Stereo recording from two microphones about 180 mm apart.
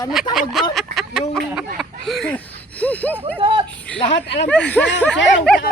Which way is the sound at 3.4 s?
30° right (ahead or behind).